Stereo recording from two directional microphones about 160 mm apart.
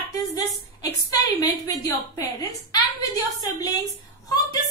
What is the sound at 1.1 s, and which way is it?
Speech, 25° left (ahead or behind).